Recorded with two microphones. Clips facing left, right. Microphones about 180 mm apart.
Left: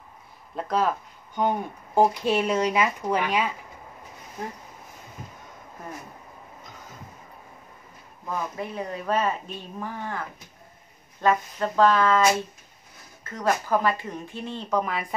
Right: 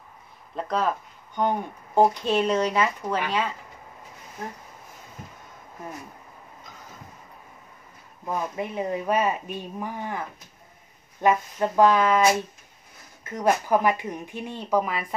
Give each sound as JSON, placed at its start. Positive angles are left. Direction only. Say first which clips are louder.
{"t": 0.6, "sound": "speech", "louder": "left 1 dB", "side_deg": 5}
{"t": 8.3, "sound": "speech", "louder": "right 2 dB", "side_deg": -20}